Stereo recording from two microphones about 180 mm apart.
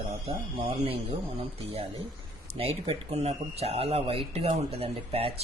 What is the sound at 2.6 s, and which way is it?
Speech, 35° right (ahead or behind).